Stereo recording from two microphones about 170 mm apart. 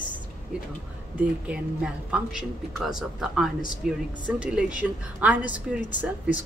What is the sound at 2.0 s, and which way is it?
Speech, 5° right (ahead or behind).